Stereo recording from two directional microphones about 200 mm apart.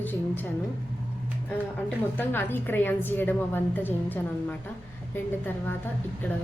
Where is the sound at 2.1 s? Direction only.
10° left (ahead or behind).